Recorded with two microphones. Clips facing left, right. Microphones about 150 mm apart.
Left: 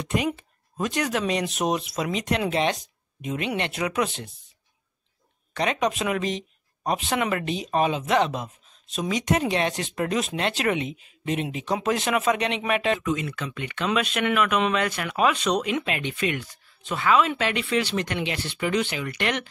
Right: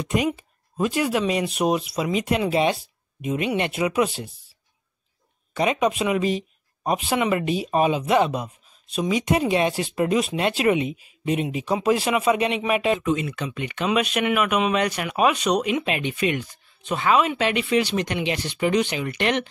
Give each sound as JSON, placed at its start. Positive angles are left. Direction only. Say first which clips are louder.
{"t": 0.0, "sound": "speech", "louder": "right 3 dB", "side_deg": -10}
{"t": 5.5, "sound": "speech", "louder": "right 3 dB", "side_deg": -10}
{"t": 13.0, "sound": "speech", "louder": "right 3 dB", "side_deg": -25}